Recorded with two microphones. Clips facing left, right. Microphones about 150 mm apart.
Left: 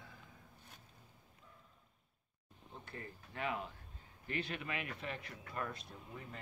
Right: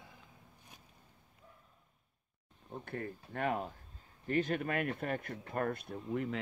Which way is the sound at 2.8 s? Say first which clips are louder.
Right 9 dB; 55° right (ahead or behind).